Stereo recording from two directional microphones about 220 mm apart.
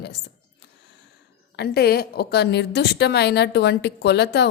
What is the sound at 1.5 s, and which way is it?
A woman's voice, 45° left (ahead or behind).